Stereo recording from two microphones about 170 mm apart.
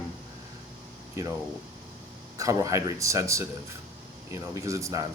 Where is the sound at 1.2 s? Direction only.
20° right (ahead or behind).